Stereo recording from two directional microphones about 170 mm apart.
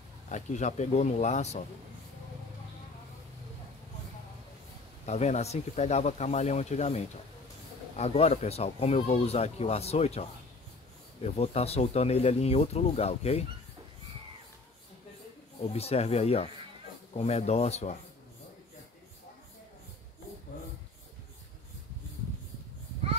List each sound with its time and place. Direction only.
0.3 s speech: 45° left (ahead or behind)
5.0 s speech: 40° left (ahead or behind)
11.2 s speech: 35° left (ahead or behind)
15.6 s speech: 35° left (ahead or behind)